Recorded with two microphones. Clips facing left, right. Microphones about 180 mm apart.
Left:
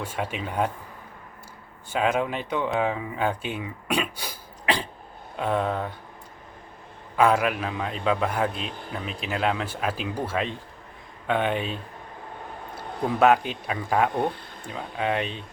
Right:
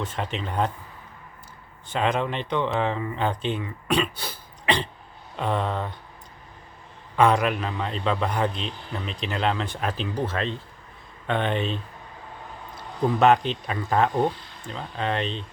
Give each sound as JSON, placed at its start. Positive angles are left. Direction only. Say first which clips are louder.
{"t": 0.0, "sound": "speech", "louder": "even", "side_deg": 10}
{"t": 1.9, "sound": "a man's voice", "louder": "even", "side_deg": 5}
{"t": 7.2, "sound": "a man's voice", "louder": "right 1 dB", "side_deg": 5}
{"t": 13.1, "sound": "speech", "louder": "even", "side_deg": 5}
{"t": 14.3, "sound": "a sound", "louder": "left 2 dB", "side_deg": 50}
{"t": 14.7, "sound": "speech", "louder": "left 1 dB", "side_deg": 10}